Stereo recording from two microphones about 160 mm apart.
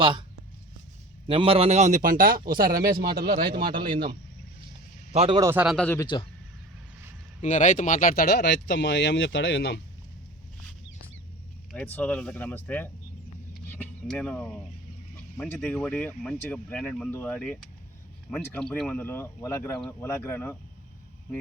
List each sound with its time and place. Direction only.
0.0 s speech: 30° right (ahead or behind)
1.3 s speech: 35° right (ahead or behind); by 3.7 s 65° right (ahead or behind)
3.7 s speech: 30° right (ahead or behind)
5.1 s speech: 40° right (ahead or behind)
5.4 s a man's voice: 15° right (ahead or behind)
5.6 s speech: 5° left (ahead or behind)
6.0 s a man's voice: 30° left (ahead or behind)
7.4 s speech: 55° left (ahead or behind); by 9.8 s 90° left
11.7 s speech: 10° left (ahead or behind)
13.7 s a sound: 10° left (ahead or behind)
15.4 s speech: 10° left (ahead or behind)